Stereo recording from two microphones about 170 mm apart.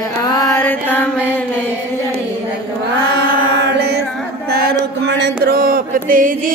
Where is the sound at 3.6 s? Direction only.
70° right (ahead or behind).